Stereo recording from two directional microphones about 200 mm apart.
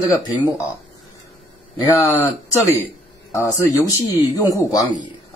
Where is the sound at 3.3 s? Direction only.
15° left (ahead or behind).